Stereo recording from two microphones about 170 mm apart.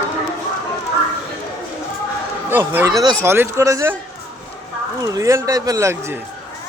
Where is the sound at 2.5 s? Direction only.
15° right (ahead or behind).